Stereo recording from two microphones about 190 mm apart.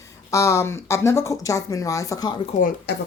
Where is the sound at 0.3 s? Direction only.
15° left (ahead or behind).